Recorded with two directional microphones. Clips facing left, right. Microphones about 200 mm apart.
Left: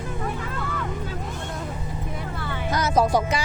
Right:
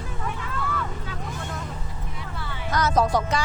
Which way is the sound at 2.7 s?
10° left (ahead or behind).